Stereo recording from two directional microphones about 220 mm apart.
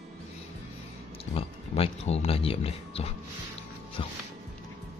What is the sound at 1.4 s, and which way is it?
Speech, 25° left (ahead or behind).